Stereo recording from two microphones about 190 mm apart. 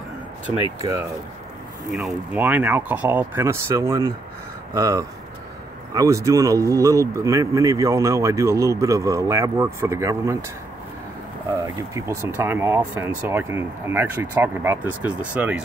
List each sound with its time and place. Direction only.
1.9 s speech: 5° right (ahead or behind)
11.6 s speech: 15° right (ahead or behind)